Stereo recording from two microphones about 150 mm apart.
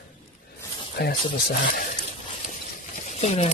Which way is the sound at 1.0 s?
90° left.